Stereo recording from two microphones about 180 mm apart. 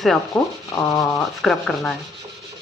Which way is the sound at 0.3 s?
20° left (ahead or behind).